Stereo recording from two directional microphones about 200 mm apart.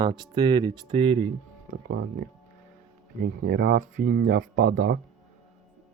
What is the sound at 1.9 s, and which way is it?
Speech, 50° right (ahead or behind).